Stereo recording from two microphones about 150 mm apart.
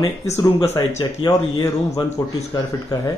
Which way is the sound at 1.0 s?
20° left (ahead or behind).